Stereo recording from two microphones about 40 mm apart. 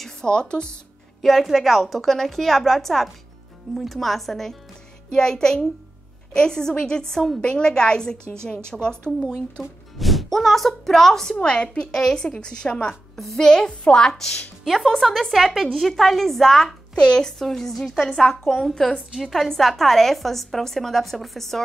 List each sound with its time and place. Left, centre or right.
0.0 s speech: centre
1.2 s a woman's voice: centre; by 9.1 s left
9.2 s a woman's voice: centre
11.4 s a woman's voice: left
11.9 s a woman's voice: centre
13.1 s a woman's voice: centre
13.4 s a woman's voice: centre
14.6 s a woman's voice: centre
17.0 s a woman's voice: centre
17.3 s a woman's voice: centre
19.1 s a woman's voice: centre